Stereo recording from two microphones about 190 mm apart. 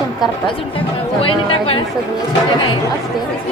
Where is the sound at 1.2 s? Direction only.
30° left (ahead or behind).